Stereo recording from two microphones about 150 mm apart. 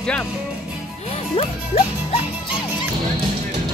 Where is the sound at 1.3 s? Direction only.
40° left (ahead or behind).